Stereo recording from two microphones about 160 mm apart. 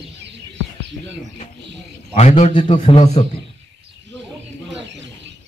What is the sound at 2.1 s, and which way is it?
Speech, 45° left (ahead or behind).